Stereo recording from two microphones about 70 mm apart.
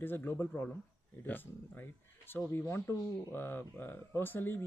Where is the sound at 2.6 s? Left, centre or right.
Left.